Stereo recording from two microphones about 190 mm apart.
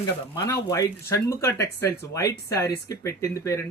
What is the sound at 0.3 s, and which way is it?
Speech, 20° left (ahead or behind).